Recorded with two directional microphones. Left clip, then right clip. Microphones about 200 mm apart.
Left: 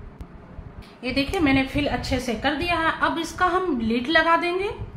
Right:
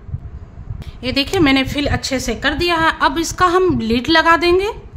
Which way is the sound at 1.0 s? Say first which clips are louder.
Right 7 dB; 50° right (ahead or behind).